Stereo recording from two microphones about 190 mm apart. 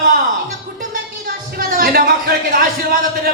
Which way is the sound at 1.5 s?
50° right (ahead or behind).